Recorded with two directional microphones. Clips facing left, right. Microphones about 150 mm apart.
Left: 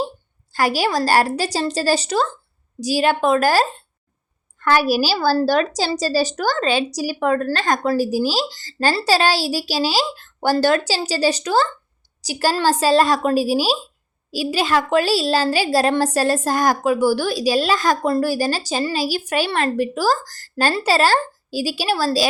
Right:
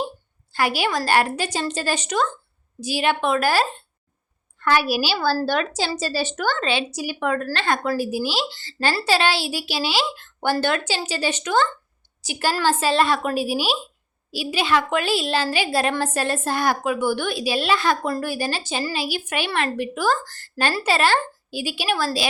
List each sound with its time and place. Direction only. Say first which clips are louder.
0.5 s a woman's voice: left 3 dB; 40° left (ahead or behind)